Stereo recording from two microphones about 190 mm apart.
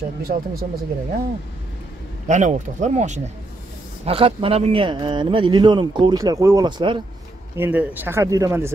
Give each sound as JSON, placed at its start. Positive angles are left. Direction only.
{"t": 0.2, "sound": "speech", "side_deg": -50}
{"t": 2.2, "sound": "a man's voice", "side_deg": -40}
{"t": 7.5, "sound": "speech", "side_deg": -10}